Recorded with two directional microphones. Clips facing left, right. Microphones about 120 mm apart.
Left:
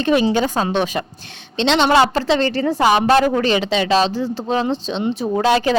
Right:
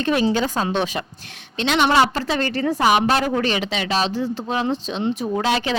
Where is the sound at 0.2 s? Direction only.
75° left (ahead or behind).